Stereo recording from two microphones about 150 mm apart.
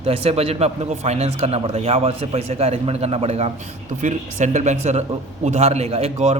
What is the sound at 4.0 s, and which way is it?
A man's voice, 55° right (ahead or behind).